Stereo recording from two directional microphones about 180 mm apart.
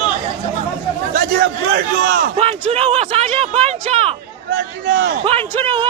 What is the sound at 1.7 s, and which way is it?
Speech, 65° right (ahead or behind).